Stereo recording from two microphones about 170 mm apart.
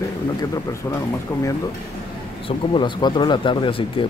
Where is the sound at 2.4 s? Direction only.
30° left (ahead or behind).